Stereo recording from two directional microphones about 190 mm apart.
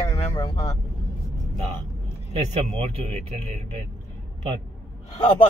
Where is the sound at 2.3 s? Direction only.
30° right (ahead or behind).